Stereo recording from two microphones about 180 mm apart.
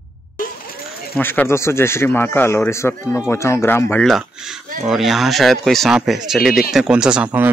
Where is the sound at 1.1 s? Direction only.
10° left (ahead or behind).